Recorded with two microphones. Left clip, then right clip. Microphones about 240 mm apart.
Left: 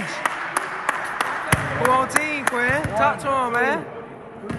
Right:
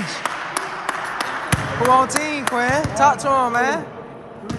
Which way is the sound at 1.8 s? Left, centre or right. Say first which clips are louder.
Right 5 dB; centre.